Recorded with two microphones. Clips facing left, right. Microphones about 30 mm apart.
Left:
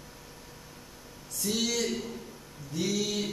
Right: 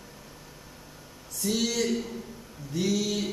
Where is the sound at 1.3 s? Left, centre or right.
Centre.